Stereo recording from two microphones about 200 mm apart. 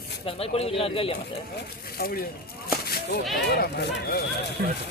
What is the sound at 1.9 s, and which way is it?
Speech, 50° left (ahead or behind).